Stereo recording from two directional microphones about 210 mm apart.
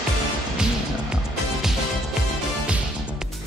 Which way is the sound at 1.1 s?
Centre (ahead or behind).